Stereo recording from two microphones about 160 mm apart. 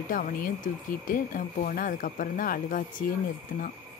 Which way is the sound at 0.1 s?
60° left (ahead or behind).